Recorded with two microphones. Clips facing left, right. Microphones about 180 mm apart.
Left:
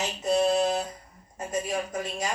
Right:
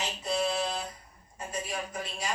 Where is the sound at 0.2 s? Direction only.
45° left (ahead or behind).